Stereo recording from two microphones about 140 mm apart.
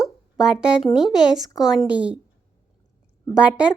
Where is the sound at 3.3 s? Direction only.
10° right (ahead or behind).